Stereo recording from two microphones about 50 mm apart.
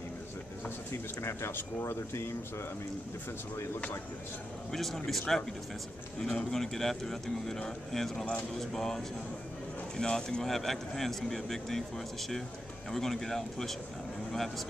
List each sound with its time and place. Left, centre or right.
1.2 s speech: left
4.7 s speech: centre